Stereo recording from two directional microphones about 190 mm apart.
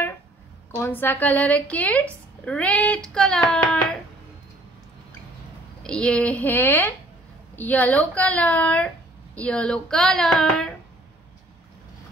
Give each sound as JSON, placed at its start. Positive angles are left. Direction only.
{"t": 0.7, "sound": "speech", "side_deg": 10}
{"t": 5.8, "sound": "speech", "side_deg": 5}